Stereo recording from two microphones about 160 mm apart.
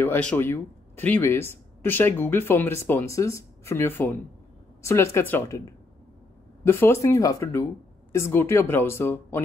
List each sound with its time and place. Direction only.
0.0 s speech: 10° left (ahead or behind)